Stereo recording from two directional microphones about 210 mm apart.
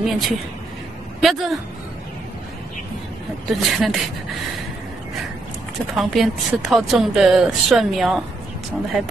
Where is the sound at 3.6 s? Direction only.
Centre (ahead or behind).